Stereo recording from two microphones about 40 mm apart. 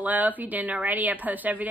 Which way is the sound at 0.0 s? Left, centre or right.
Right.